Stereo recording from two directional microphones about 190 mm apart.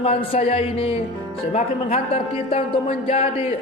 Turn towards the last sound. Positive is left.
turn(degrees=30)  # may be behind; listen again after turning